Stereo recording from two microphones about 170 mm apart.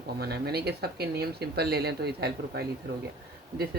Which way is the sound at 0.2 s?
70° right (ahead or behind).